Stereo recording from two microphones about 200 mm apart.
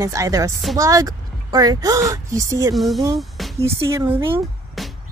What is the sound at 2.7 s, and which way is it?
Speech, centre (ahead or behind).